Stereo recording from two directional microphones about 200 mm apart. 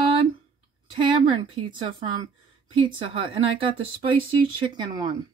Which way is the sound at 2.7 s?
25° right (ahead or behind).